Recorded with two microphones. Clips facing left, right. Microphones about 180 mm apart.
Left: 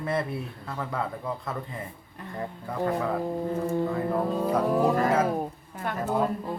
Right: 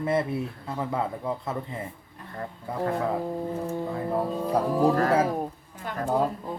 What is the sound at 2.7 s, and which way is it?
Speech, 25° right (ahead or behind).